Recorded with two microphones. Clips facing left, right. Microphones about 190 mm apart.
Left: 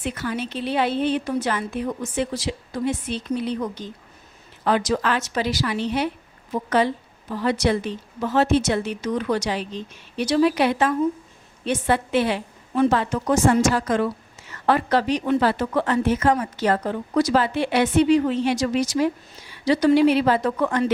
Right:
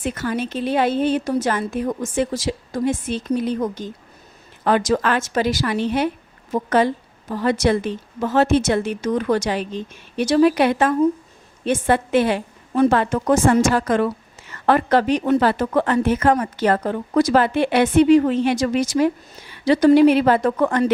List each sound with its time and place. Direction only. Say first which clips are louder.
0.0 s a woman's voice: right 3 dB; 45° right (ahead or behind)